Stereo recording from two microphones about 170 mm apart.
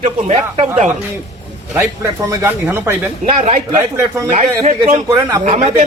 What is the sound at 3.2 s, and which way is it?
Speech, 40° right (ahead or behind).